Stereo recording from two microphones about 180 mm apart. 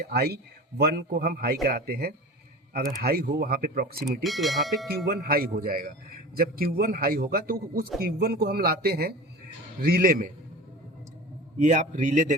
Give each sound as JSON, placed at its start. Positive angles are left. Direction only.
{"t": 0.1, "sound": "a man's voice", "side_deg": -60}
{"t": 4.2, "sound": "speech", "side_deg": 0}
{"t": 5.0, "sound": "a man's voice", "side_deg": -55}
{"t": 11.6, "sound": "a man's voice", "side_deg": -45}